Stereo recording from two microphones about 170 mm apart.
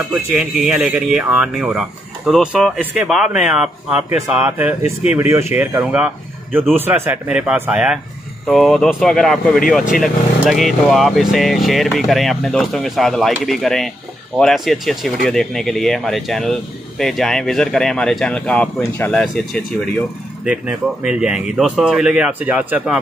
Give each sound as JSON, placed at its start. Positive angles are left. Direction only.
{"t": 0.1, "sound": "speech", "side_deg": -5}